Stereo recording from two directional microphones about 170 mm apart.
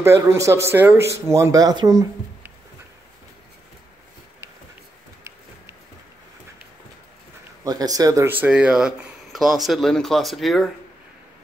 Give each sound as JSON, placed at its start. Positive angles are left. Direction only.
{"t": 0.0, "sound": "speech", "side_deg": -15}
{"t": 7.6, "sound": "speech", "side_deg": -20}